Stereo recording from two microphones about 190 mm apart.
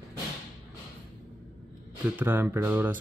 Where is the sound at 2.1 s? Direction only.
10° right (ahead or behind).